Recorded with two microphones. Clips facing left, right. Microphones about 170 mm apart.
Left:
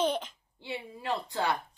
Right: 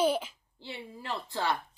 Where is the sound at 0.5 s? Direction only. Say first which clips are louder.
Left 3 dB; 15° left (ahead or behind).